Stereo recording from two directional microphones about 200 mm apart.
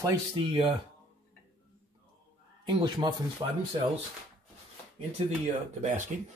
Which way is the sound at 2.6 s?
20° right (ahead or behind).